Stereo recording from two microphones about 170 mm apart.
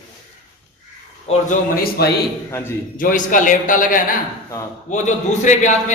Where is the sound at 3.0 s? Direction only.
50° left (ahead or behind).